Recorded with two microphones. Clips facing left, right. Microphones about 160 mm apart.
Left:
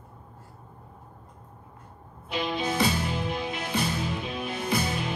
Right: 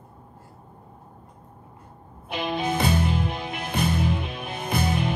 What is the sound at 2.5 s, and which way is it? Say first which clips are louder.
Music: right 3 dB; 55° right (ahead or behind).